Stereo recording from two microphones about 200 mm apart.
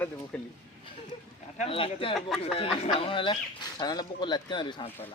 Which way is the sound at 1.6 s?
25° left (ahead or behind).